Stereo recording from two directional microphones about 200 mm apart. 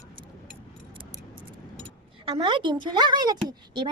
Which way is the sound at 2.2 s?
25° right (ahead or behind).